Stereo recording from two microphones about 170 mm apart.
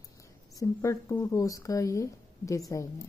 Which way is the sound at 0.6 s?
20° left (ahead or behind).